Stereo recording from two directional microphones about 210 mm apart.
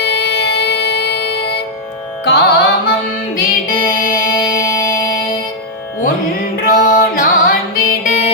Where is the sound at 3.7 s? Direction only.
40° left (ahead or behind).